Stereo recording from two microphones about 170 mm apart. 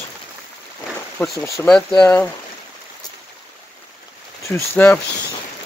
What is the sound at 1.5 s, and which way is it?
Speech, 5° left (ahead or behind).